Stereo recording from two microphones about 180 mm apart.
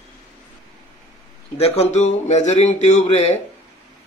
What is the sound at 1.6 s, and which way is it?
Speech, 35° left (ahead or behind).